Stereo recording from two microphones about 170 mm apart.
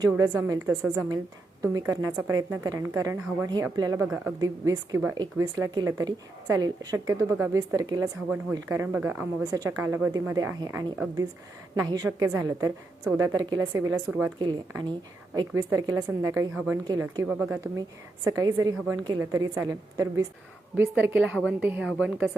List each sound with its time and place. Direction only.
0.0 s a woman's voice: 20° right (ahead or behind)
8.0 s a woman's voice: 10° right (ahead or behind)
11.7 s a woman's voice: 25° right (ahead or behind)
12.0 s a woman's voice: 15° right (ahead or behind)
15.4 s a woman's voice: 20° right (ahead or behind)
18.3 s a woman's voice: 20° right (ahead or behind)